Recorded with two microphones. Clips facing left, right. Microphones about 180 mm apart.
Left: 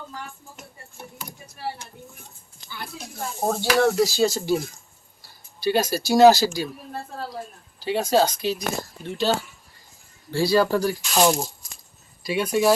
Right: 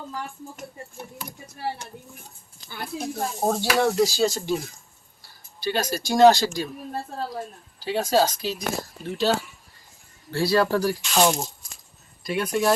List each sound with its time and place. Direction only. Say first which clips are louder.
2.6 s speech: right 5 dB; 50° right (ahead or behind)
3.4 s speech: left 2 dB; centre (ahead or behind)
5.6 s speech: left 4 dB; 10° left (ahead or behind)
7.8 s speech: left 1 dB; centre (ahead or behind)